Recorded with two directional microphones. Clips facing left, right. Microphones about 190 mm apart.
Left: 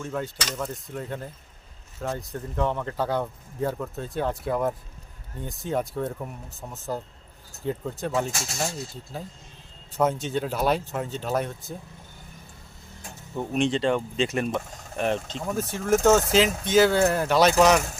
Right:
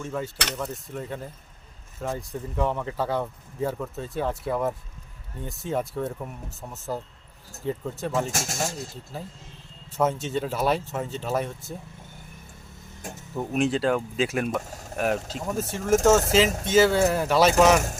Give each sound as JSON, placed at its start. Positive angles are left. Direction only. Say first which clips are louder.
{"t": 0.0, "sound": "speech", "louder": "even", "side_deg": 0}
{"t": 8.3, "sound": "speech", "louder": "right 2 dB", "side_deg": -45}
{"t": 9.1, "sound": "speech", "louder": "left 1 dB", "side_deg": 0}
{"t": 13.3, "sound": "speech", "louder": "even", "side_deg": -5}